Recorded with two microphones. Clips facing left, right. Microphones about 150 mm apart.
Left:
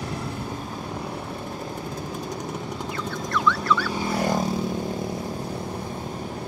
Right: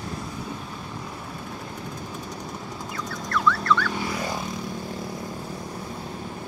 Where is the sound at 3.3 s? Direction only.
Centre (ahead or behind).